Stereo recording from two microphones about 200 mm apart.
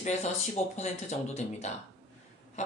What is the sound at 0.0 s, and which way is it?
Speech, 35° left (ahead or behind).